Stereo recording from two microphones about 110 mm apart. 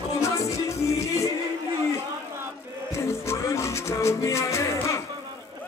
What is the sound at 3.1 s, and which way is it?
Music, 25° left (ahead or behind).